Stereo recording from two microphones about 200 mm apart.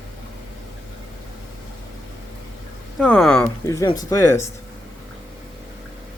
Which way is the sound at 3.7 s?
15° left (ahead or behind).